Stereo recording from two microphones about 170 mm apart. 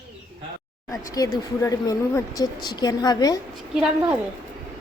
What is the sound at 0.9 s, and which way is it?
A woman's voice, 20° left (ahead or behind).